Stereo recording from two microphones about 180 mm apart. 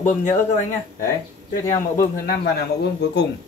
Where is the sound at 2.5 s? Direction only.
70° left (ahead or behind).